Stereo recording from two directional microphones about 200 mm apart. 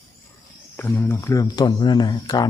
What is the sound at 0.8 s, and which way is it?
Speech, 10° left (ahead or behind).